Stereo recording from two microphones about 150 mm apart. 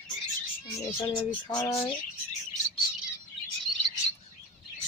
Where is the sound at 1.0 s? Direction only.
20° left (ahead or behind).